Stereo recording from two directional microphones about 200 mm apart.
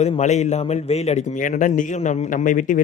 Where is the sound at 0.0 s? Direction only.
35° left (ahead or behind).